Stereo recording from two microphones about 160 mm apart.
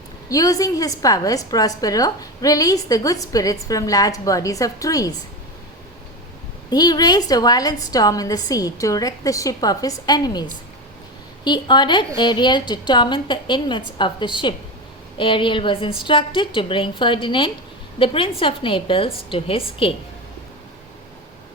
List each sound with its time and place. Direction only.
0.3 s a woman's voice: 20° left (ahead or behind)
6.7 s a woman's voice: 25° left (ahead or behind)